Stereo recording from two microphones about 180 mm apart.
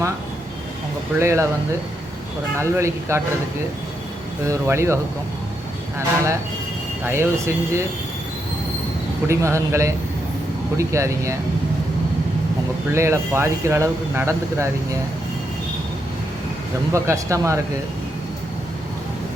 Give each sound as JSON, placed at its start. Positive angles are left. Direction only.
{"t": 1.2, "sound": "speech", "side_deg": -15}
{"t": 2.6, "sound": "speech", "side_deg": -15}
{"t": 4.4, "sound": "speech", "side_deg": -15}
{"t": 7.0, "sound": "speech", "side_deg": -15}
{"t": 9.2, "sound": "speech", "side_deg": -15}
{"t": 12.9, "sound": "speech", "side_deg": -15}
{"t": 16.9, "sound": "speech", "side_deg": -15}